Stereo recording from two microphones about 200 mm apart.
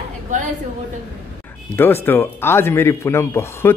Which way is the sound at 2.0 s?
10° left (ahead or behind).